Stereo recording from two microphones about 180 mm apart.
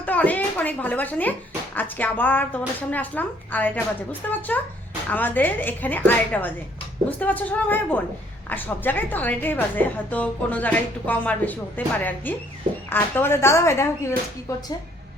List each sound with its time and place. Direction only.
0.0 s a woman's voice: 10° left (ahead or behind)